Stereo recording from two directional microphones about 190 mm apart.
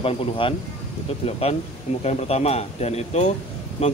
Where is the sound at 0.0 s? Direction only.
30° left (ahead or behind).